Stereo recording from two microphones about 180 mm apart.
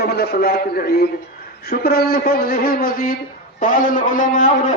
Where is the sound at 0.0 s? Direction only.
60° left (ahead or behind).